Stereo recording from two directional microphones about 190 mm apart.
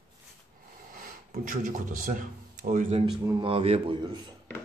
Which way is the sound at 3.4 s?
30° right (ahead or behind).